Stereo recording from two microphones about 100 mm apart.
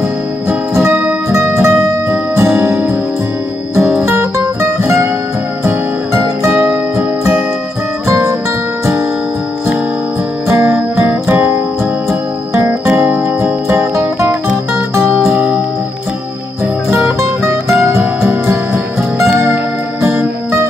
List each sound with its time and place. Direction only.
0.5 s music: 25° right (ahead or behind)
4.0 s music: 25° right (ahead or behind)
8.1 s music: 30° right (ahead or behind)
11.1 s music: 20° right (ahead or behind)
13.0 s music: 20° right (ahead or behind)
19.3 s music: 20° right (ahead or behind)